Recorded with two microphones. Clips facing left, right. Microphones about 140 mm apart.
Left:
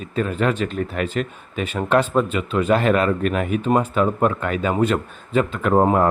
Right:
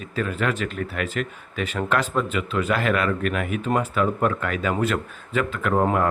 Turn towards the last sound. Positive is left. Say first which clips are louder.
# left 4 dB
turn(degrees=30)  # may be behind; listen again after turning